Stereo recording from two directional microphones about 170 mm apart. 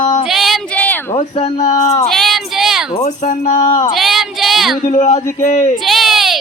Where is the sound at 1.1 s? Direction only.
40° left (ahead or behind).